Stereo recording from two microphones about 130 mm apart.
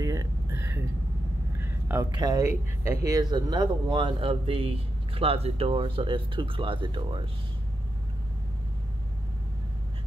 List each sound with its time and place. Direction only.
0.0 s a sound: 25° right (ahead or behind)
1.6 s vehicle: 20° right (ahead or behind)
2.1 s speech: 30° right (ahead or behind)